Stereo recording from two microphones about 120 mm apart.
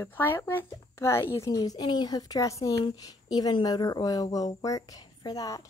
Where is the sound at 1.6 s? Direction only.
35° left (ahead or behind).